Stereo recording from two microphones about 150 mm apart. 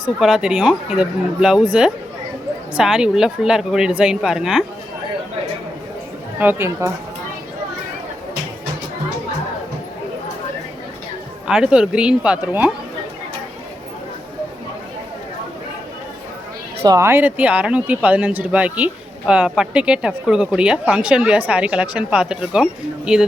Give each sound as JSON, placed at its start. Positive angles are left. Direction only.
{"t": 0.2, "sound": "a woman's voice", "side_deg": -5}
{"t": 6.4, "sound": "speech", "side_deg": -15}
{"t": 11.4, "sound": "a woman's voice", "side_deg": -5}
{"t": 16.8, "sound": "speech", "side_deg": -20}